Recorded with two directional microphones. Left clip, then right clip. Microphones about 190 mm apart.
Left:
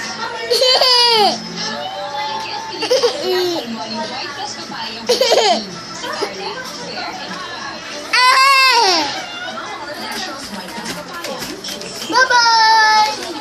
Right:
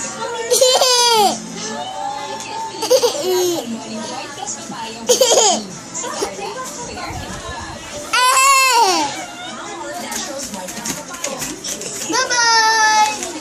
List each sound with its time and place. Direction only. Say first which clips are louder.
0.5 s baby cry: left 1 dB; 15° right (ahead or behind)
2.8 s laughter: right 1 dB; 10° right (ahead or behind)
5.0 s laughter: even; 10° right (ahead or behind)
8.1 s baby cry: left 2 dB; 5° right (ahead or behind)
12.1 s child singing: left 3 dB; 25° right (ahead or behind)